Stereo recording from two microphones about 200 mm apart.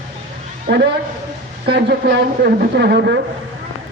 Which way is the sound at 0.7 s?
50° right (ahead or behind).